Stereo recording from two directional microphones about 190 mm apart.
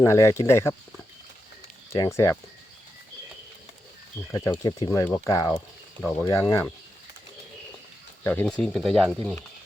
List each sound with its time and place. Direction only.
0.0 s speech: 15° left (ahead or behind)
1.9 s speech: 15° left (ahead or behind)
4.3 s speech: 15° left (ahead or behind)
6.0 s speech: 5° left (ahead or behind)
8.2 s speech: 10° left (ahead or behind)